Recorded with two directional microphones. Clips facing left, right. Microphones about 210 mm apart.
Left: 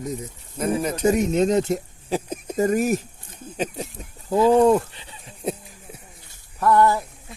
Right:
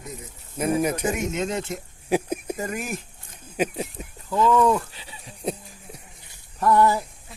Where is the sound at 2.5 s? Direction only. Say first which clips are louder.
Left 10 dB; 40° left (ahead or behind).